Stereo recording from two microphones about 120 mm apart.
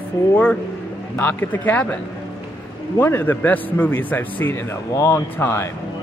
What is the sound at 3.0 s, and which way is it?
A man's voice, 15° left (ahead or behind).